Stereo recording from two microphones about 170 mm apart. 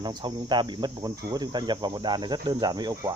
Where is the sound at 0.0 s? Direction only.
25° right (ahead or behind).